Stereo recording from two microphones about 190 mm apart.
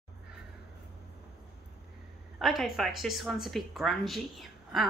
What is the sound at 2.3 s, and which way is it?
Speech, centre (ahead or behind).